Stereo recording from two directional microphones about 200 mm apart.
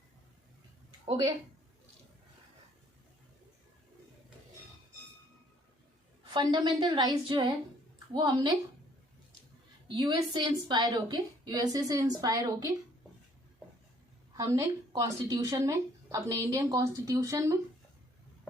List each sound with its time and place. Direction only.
1.0 s a woman's voice: 20° right (ahead or behind)
6.3 s a woman's voice: 20° right (ahead or behind)
9.9 s a woman's voice: 20° right (ahead or behind)
14.3 s speech: 15° right (ahead or behind)